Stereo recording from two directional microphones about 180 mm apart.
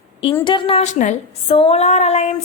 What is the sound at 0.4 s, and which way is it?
A woman's voice, 30° left (ahead or behind).